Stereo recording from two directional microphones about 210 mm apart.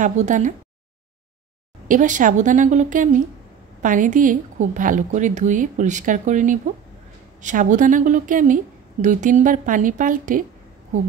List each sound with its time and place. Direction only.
0.0 s a woman's voice: 35° right (ahead or behind)
1.9 s a woman's voice: 35° right (ahead or behind)